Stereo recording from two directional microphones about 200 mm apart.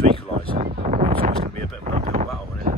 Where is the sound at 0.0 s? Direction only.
30° right (ahead or behind).